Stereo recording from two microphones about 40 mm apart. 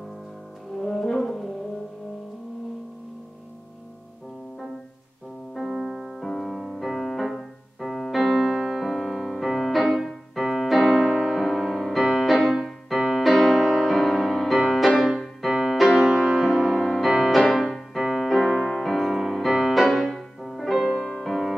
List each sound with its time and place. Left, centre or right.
0.7 s brass instrument: centre
5.5 s music: centre
6.9 s piano: centre
8.1 s music: centre
10.0 s piano: centre
12.0 s music: centre
19.8 s music: centre
20.1 s music: centre